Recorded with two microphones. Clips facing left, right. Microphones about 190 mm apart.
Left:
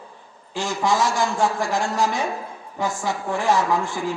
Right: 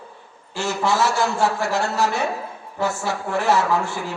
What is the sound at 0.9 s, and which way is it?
Speech, 65° right (ahead or behind).